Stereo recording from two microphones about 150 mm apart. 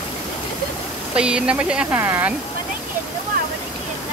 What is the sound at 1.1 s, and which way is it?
Speech, 5° right (ahead or behind).